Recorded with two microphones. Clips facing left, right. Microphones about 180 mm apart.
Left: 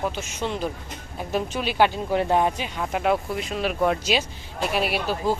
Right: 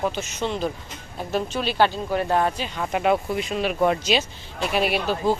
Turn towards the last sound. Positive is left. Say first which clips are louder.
# right 2 dB
turn(degrees=5)  # may be behind; listen again after turning